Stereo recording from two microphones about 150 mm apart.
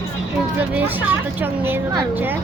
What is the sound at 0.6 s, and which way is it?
A woman's voice, 10° right (ahead or behind).